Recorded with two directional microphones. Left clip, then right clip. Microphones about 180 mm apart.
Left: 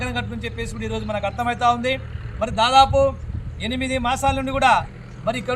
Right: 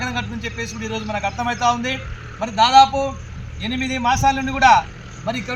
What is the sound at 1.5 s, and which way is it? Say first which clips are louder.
Speech: left 1 dB; 25° left (ahead or behind).